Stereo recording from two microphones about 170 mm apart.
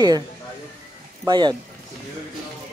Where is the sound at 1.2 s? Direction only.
25° right (ahead or behind).